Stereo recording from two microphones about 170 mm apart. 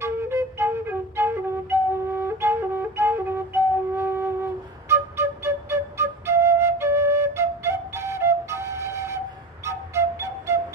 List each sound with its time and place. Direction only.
0.0 s flute: 15° right (ahead or behind)
9.7 s music: 15° right (ahead or behind)